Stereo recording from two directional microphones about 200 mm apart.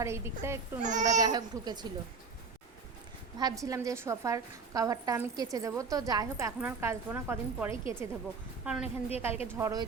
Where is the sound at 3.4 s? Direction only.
15° right (ahead or behind).